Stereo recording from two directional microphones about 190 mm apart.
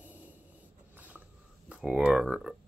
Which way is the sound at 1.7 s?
5° right (ahead or behind).